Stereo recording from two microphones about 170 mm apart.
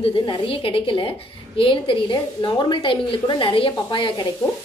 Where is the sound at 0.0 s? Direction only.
30° left (ahead or behind).